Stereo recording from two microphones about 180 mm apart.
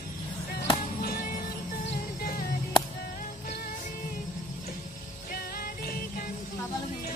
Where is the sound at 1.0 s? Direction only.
55° left (ahead or behind).